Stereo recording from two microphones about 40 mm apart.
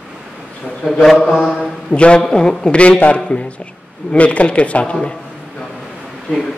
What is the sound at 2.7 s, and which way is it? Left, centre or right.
A man's voice, left.